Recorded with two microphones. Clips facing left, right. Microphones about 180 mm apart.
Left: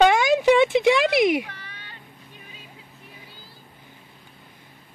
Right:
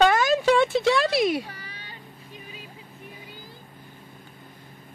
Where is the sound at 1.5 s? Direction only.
10° right (ahead or behind).